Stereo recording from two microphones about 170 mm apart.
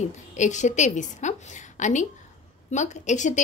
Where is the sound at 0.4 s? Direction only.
45° left (ahead or behind).